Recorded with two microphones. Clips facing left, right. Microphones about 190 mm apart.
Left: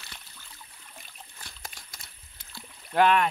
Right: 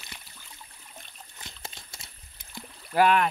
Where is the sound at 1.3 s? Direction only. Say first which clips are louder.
Right 3 dB; 20° right (ahead or behind).